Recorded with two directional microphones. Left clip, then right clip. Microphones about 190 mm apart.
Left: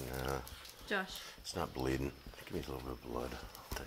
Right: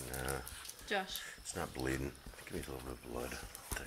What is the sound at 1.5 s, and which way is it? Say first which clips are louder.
Speech: left 2 dB; 15° left (ahead or behind).